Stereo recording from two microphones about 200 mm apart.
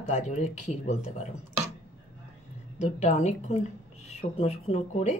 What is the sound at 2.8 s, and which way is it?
Speech, 35° left (ahead or behind).